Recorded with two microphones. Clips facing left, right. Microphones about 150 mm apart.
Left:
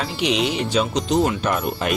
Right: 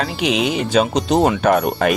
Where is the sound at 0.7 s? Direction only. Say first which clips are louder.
Right 4 dB; 65° right (ahead or behind).